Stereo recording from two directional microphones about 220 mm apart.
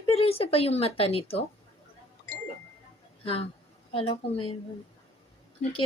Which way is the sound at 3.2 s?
25° left (ahead or behind).